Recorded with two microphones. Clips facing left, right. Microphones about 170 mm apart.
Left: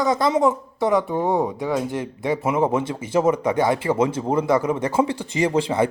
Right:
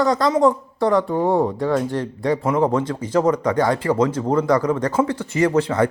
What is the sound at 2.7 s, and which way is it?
Speech, 25° left (ahead or behind).